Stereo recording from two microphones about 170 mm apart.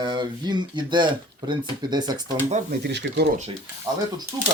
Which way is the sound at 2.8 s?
80° right.